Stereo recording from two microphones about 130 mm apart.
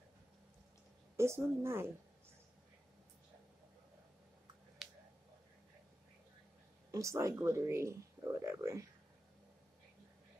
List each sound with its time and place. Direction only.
1.1 s speech: 20° right (ahead or behind)
4.8 s finger snapping: 5° right (ahead or behind)
6.9 s speech: 25° right (ahead or behind)